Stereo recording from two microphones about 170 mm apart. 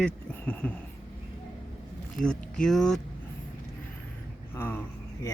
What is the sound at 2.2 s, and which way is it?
Speech, 5° left (ahead or behind).